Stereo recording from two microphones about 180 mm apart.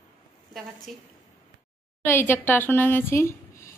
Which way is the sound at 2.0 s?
10° left (ahead or behind).